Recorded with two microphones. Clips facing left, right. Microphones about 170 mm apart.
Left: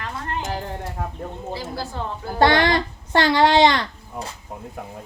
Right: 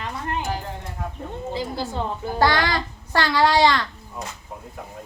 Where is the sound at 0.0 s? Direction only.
15° right (ahead or behind).